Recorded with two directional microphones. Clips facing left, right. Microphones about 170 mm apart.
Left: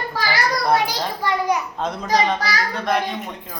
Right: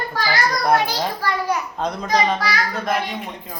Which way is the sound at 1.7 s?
Centre (ahead or behind).